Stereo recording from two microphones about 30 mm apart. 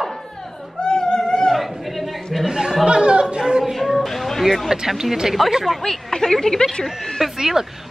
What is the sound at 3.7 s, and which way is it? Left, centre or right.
Music, centre.